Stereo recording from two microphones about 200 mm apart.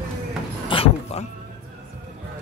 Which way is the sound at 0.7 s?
30° left (ahead or behind).